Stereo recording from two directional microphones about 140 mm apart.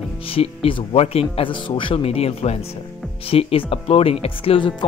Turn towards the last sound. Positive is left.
turn(degrees=35)  # may be behind; listen again after turning